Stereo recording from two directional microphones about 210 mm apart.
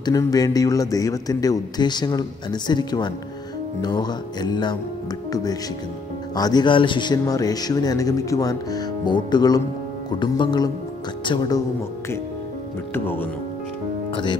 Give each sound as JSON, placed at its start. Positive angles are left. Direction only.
{"t": 0.0, "sound": "a man's voice", "side_deg": 15}
{"t": 12.9, "sound": "a man's voice", "side_deg": 10}